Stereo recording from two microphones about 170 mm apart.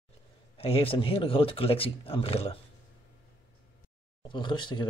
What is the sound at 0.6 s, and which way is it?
Speech, 35° left (ahead or behind).